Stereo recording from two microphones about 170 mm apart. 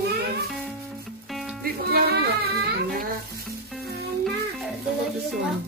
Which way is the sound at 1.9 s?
65° right (ahead or behind).